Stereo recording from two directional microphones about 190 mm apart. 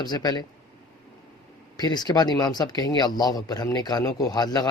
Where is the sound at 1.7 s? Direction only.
20° left (ahead or behind).